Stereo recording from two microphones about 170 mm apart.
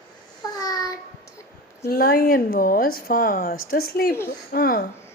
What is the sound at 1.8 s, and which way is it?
Speech, 65° left (ahead or behind).